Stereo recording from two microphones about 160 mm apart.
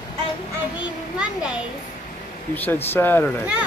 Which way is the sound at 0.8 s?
5° right (ahead or behind).